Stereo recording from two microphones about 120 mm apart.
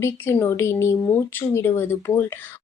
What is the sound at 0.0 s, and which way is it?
A woman's voice, 20° left (ahead or behind).